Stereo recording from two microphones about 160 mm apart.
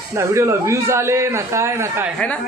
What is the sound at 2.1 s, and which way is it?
Speech, 10° left (ahead or behind).